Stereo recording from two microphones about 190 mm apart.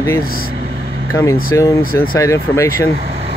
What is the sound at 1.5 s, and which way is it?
Speech, 15° left (ahead or behind).